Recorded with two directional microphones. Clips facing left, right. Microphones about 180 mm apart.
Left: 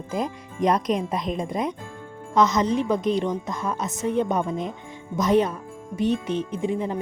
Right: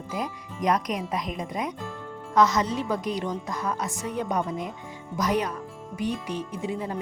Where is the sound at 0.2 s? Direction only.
30° left (ahead or behind).